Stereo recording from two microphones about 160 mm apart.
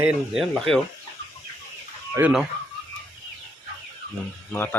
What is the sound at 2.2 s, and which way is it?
Speech, 10° right (ahead or behind).